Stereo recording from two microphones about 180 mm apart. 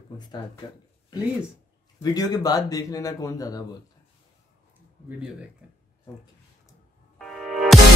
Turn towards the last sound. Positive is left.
turn(degrees=0)  # may be behind; listen again after turning